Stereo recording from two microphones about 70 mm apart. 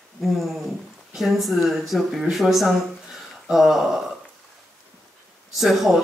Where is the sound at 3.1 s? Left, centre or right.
Centre.